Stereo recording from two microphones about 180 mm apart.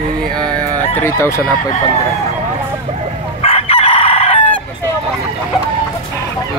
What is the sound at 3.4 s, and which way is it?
Chicken, 35° left (ahead or behind).